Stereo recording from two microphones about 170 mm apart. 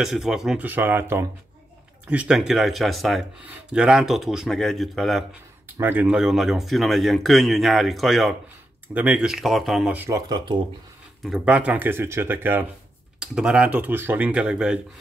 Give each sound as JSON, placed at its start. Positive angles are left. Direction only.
{"t": 0.0, "sound": "speech", "side_deg": -5}
{"t": 5.8, "sound": "speech", "side_deg": -10}
{"t": 11.2, "sound": "speech", "side_deg": -5}